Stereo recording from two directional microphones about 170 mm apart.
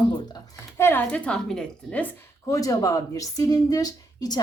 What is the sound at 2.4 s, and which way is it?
A woman's voice, 20° left (ahead or behind).